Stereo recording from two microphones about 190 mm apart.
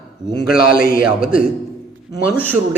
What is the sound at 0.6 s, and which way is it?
Speech, 50° left (ahead or behind).